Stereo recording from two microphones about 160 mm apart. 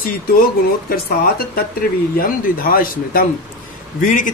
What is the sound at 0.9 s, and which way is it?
A man's voice, 70° left (ahead or behind).